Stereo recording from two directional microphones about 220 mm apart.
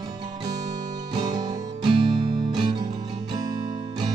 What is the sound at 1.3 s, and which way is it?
Music, 20° right (ahead or behind).